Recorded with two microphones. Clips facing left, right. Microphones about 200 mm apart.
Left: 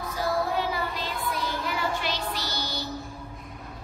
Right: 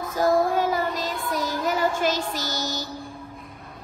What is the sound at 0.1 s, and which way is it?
Child singing, 45° right (ahead or behind).